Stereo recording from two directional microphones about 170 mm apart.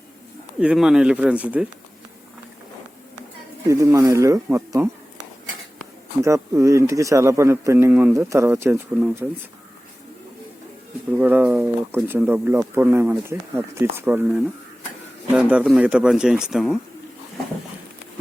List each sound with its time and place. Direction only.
0.6 s speech: 5° right (ahead or behind)
3.7 s speech: 20° right (ahead or behind)
6.2 s speech: 20° right (ahead or behind)
11.2 s speech: 10° right (ahead or behind)